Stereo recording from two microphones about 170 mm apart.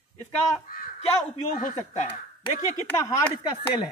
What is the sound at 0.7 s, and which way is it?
Speech, 55° left (ahead or behind).